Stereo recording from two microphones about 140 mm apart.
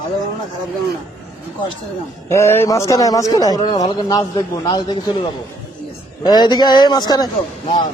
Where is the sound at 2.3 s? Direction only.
20° left (ahead or behind).